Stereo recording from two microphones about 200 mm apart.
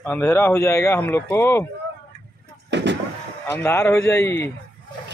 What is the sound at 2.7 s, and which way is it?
Artillery fire, 60° right (ahead or behind).